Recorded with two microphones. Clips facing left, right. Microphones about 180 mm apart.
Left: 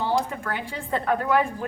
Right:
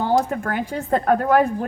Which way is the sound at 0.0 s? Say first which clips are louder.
Right 5 dB; 45° right (ahead or behind).